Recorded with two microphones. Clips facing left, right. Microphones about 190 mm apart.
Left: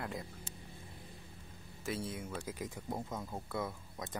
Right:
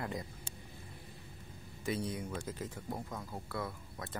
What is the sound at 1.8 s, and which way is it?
Speech, centre (ahead or behind).